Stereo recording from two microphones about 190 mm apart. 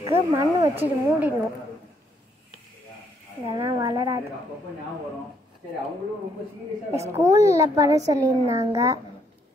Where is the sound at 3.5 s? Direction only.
30° right (ahead or behind).